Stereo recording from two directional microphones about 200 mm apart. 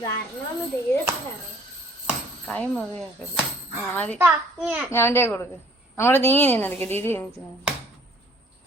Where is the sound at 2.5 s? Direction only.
5° left (ahead or behind).